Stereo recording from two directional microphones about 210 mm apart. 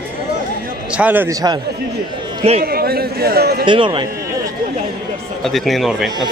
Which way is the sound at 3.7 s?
25° right (ahead or behind).